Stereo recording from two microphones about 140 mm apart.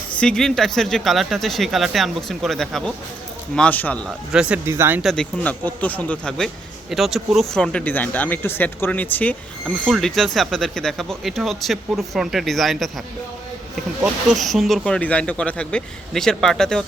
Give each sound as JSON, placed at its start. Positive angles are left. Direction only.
{"t": 0.2, "sound": "speech", "side_deg": 5}
{"t": 4.3, "sound": "speech", "side_deg": -10}
{"t": 5.0, "sound": "speech", "side_deg": 5}
{"t": 9.6, "sound": "speech", "side_deg": 0}
{"t": 14.0, "sound": "speech", "side_deg": 0}